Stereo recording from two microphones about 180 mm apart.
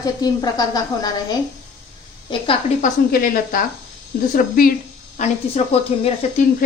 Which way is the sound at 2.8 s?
50° left (ahead or behind).